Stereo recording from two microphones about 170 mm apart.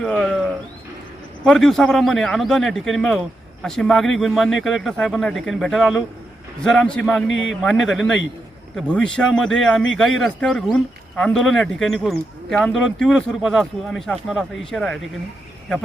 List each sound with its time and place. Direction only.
0.0 s speech: 5° left (ahead or behind)
1.5 s speech: centre (ahead or behind)